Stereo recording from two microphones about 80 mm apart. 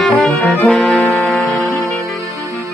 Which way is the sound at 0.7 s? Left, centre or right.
Centre.